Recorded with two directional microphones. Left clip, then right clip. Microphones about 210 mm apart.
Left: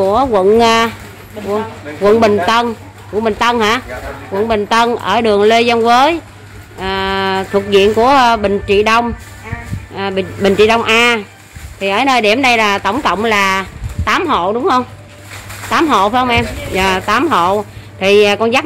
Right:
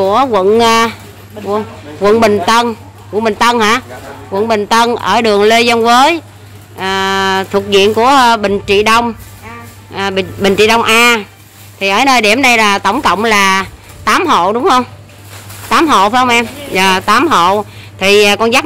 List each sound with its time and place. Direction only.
0.0 s speech: 5° right (ahead or behind)